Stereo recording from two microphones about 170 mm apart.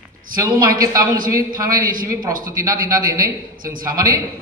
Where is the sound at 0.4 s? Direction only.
20° right (ahead or behind).